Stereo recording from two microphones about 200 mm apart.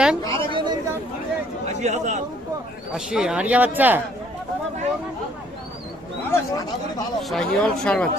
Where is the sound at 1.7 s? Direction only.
35° right (ahead or behind).